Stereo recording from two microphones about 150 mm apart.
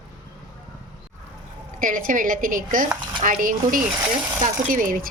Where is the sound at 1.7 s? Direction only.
65° right (ahead or behind).